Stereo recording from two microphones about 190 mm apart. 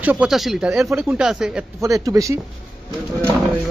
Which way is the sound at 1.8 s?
15° right (ahead or behind).